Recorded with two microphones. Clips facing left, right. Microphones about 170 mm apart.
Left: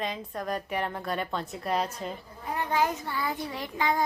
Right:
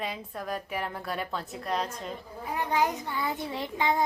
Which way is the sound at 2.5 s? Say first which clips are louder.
Even; 15° right (ahead or behind).